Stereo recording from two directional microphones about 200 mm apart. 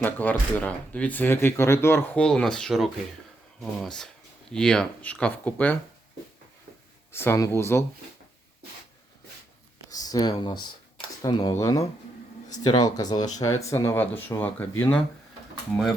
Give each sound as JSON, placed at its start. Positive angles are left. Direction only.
{"t": 0.0, "sound": "speech", "side_deg": 10}
{"t": 7.1, "sound": "speech", "side_deg": 10}
{"t": 9.9, "sound": "a sound", "side_deg": 20}
{"t": 10.3, "sound": "speech", "side_deg": 20}